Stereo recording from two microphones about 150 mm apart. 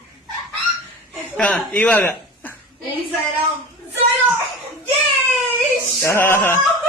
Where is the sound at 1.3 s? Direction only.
10° left (ahead or behind).